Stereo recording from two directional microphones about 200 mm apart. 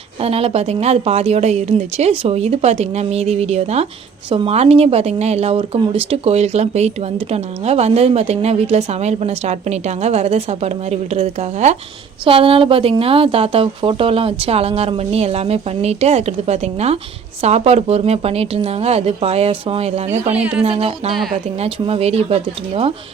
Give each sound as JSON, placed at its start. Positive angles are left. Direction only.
{"t": 0.2, "sound": "a woman's voice", "side_deg": -30}
{"t": 20.3, "sound": "speech", "side_deg": -5}
{"t": 20.7, "sound": "a woman's voice", "side_deg": -30}